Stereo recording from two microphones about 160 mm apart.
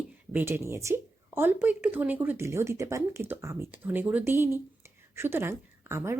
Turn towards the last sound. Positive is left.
turn(degrees=-15)  # may be behind; listen again after turning